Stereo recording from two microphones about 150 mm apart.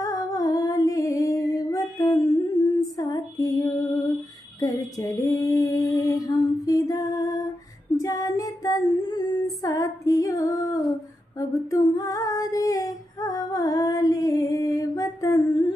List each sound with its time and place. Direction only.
0.0 s music: 25° left (ahead or behind)
3.0 s female singing: 25° left (ahead or behind)